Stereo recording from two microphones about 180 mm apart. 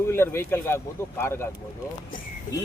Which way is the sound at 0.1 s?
15° left (ahead or behind).